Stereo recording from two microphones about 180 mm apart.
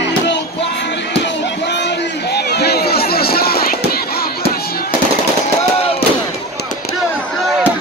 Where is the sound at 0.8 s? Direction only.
75° left (ahead or behind); by 4.3 s 55° left (ahead or behind).